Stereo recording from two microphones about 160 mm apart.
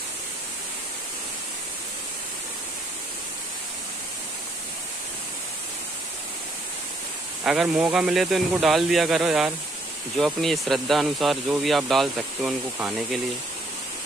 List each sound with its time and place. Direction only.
7.4 s speech: 5° right (ahead or behind)